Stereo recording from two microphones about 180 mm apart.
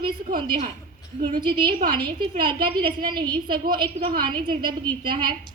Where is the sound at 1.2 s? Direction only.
25° right (ahead or behind).